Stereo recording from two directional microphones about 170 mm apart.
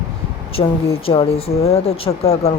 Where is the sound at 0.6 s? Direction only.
35° left (ahead or behind).